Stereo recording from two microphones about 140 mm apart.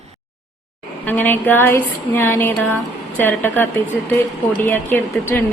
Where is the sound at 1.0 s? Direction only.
15° left (ahead or behind).